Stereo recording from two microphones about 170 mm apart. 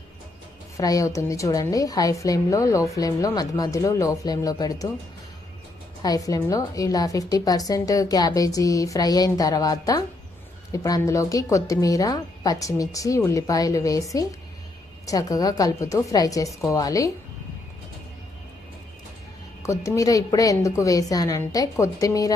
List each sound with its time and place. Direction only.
0.8 s a woman's voice: 20° left (ahead or behind)
6.0 s a woman's voice: 20° left (ahead or behind)
19.6 s a woman's voice: 20° left (ahead or behind)